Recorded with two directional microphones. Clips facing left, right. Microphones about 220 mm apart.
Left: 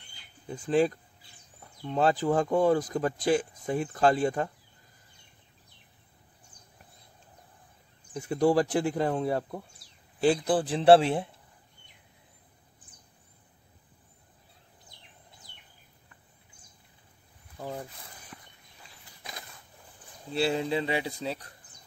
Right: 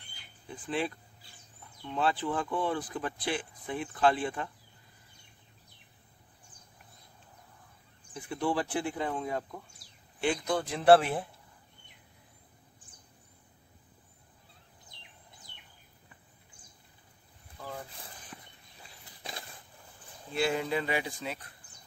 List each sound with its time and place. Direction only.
0.5 s speech: 40° left (ahead or behind)
8.1 s a man's voice: 40° left (ahead or behind)
20.3 s speech: 30° left (ahead or behind)